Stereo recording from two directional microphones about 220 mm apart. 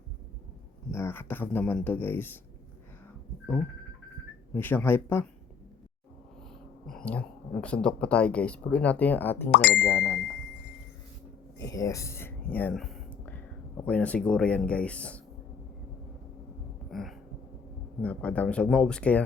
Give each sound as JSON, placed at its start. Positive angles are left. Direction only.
{"t": 0.9, "sound": "speech", "side_deg": 10}
{"t": 4.5, "sound": "speech", "side_deg": 10}
{"t": 6.8, "sound": "speech", "side_deg": 5}
{"t": 9.5, "sound": "speech", "side_deg": 50}
{"t": 9.7, "sound": "speech", "side_deg": 5}
{"t": 11.7, "sound": "speech", "side_deg": 15}
{"t": 16.9, "sound": "heart sounds", "side_deg": 0}
{"t": 18.0, "sound": "speech", "side_deg": 5}